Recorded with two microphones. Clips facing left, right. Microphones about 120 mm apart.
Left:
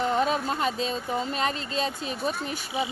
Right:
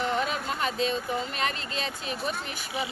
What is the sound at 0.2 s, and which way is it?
Vehicle, 35° left (ahead or behind).